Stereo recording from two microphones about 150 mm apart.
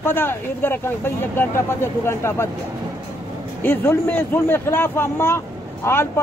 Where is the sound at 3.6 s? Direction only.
15° left (ahead or behind).